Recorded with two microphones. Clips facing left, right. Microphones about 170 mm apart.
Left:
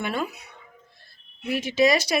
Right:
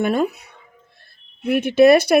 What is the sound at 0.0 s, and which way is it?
Speech, 50° right (ahead or behind).